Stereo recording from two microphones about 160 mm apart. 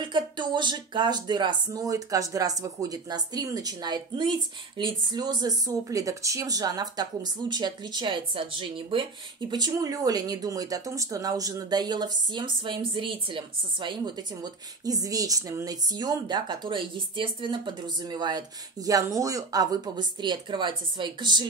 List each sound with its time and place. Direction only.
0.0 s speech: 30° right (ahead or behind)